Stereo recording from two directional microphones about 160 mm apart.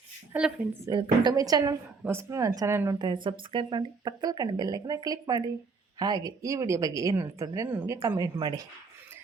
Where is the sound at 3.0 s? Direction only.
30° right (ahead or behind).